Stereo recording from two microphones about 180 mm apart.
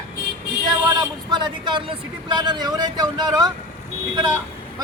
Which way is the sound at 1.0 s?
25° right (ahead or behind).